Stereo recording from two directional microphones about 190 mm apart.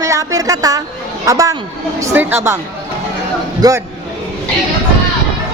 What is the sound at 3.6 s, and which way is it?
Speech, 20° right (ahead or behind).